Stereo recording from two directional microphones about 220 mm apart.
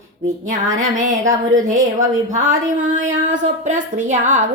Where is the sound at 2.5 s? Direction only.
35° right (ahead or behind).